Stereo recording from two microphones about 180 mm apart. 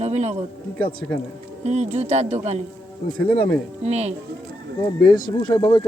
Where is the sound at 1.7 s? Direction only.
35° right (ahead or behind).